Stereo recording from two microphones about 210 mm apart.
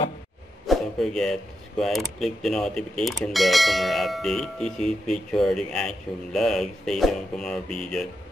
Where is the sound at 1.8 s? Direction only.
Centre (ahead or behind).